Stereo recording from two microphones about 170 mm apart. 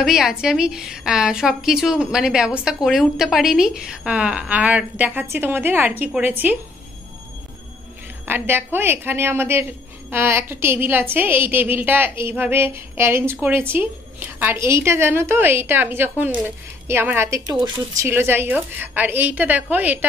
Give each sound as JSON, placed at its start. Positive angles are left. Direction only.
{"t": 0.0, "sound": "a woman's voice", "side_deg": -5}
{"t": 8.3, "sound": "a woman's voice", "side_deg": -10}